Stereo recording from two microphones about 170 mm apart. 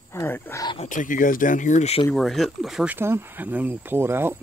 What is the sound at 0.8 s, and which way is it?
Speech, 50° left (ahead or behind).